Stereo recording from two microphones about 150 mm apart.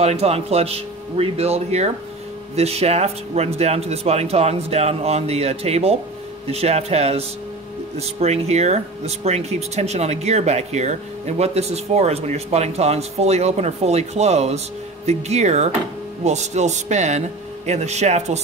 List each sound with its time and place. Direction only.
0.0 s speech: 45° right (ahead or behind)